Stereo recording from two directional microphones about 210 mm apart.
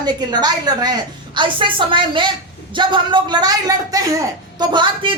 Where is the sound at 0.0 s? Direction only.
20° right (ahead or behind).